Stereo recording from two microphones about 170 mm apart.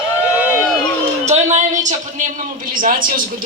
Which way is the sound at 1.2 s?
40° right (ahead or behind).